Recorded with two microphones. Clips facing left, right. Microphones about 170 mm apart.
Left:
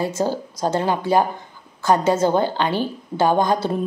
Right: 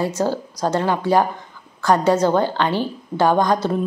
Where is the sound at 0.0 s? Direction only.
20° left (ahead or behind).